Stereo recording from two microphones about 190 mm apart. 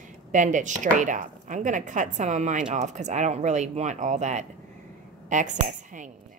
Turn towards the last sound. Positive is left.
turn(degrees=-40)  # may be behind; listen again after turning